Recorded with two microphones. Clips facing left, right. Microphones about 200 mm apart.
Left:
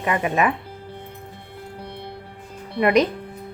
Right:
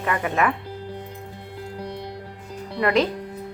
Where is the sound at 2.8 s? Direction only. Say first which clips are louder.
Left 3 dB; 20° left (ahead or behind).